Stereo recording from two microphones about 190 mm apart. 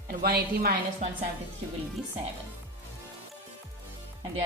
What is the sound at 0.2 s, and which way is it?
Speech, 55° right (ahead or behind).